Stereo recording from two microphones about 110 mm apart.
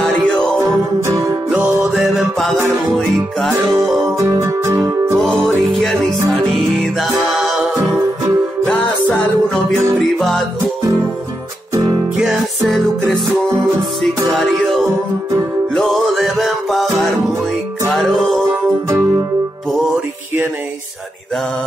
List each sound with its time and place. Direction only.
0.0 s music: 5° left (ahead or behind)
1.5 s music: 20° right (ahead or behind)
3.0 s music: 5° left (ahead or behind)
3.7 s music: 30° right (ahead or behind)
5.7 s music: centre (ahead or behind)
10.1 s music: centre (ahead or behind)
12.2 s music: 5° right (ahead or behind)
15.7 s music: centre (ahead or behind)
17.8 s music: centre (ahead or behind)